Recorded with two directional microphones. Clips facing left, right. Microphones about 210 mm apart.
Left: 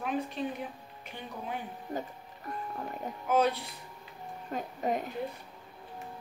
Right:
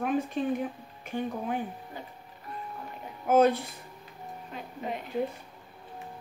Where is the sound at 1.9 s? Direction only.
45° left (ahead or behind).